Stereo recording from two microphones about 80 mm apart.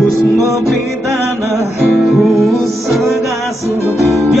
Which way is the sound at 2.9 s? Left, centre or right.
Centre.